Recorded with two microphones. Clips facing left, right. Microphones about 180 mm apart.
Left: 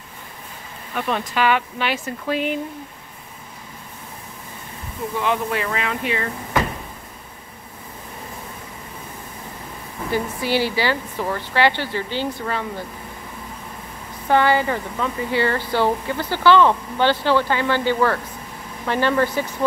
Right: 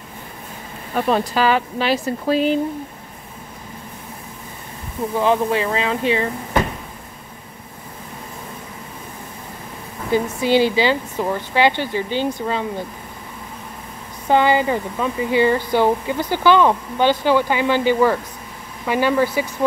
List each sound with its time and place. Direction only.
0.9 s speech: 35° right (ahead or behind)
5.2 s speech: 30° right (ahead or behind)
10.4 s speech: 20° right (ahead or behind)
14.3 s speech: 15° right (ahead or behind)